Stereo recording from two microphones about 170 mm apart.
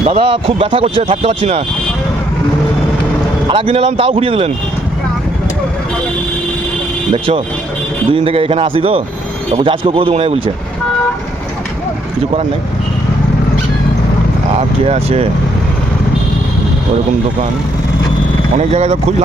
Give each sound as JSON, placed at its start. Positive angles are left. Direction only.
{"t": 0.0, "sound": "speech", "side_deg": -35}
{"t": 3.5, "sound": "speech", "side_deg": -35}
{"t": 7.1, "sound": "speech", "side_deg": -35}
{"t": 14.8, "sound": "speech", "side_deg": -35}
{"t": 18.5, "sound": "speech", "side_deg": -40}